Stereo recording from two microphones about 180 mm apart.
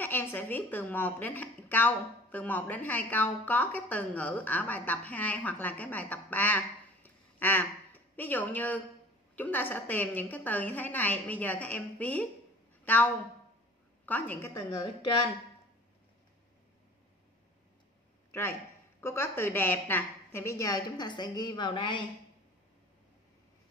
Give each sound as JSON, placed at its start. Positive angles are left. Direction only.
{"t": 0.0, "sound": "a woman's voice", "side_deg": 10}
{"t": 18.9, "sound": "a woman's voice", "side_deg": 15}